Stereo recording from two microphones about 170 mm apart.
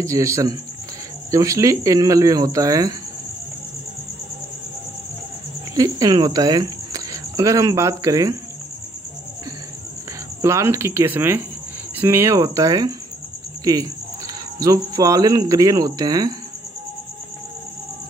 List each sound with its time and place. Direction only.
0.0 s speech: 20° right (ahead or behind)
5.8 s speech: 25° right (ahead or behind)
10.4 s speech: 15° right (ahead or behind)
13.7 s cricket: 20° right (ahead or behind)